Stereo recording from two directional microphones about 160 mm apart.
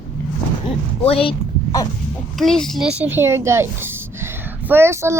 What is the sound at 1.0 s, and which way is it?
Speech, 35° left (ahead or behind).